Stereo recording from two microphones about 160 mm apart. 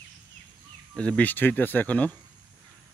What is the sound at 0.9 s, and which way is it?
Speech, 5° left (ahead or behind).